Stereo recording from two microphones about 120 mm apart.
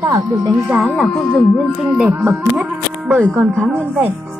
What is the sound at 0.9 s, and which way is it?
Speech, 10° left (ahead or behind).